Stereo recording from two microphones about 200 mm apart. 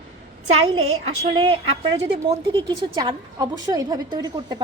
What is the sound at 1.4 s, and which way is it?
A woman's voice, 25° right (ahead or behind).